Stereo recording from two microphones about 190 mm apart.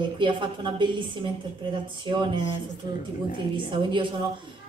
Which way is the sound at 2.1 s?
25° right (ahead or behind).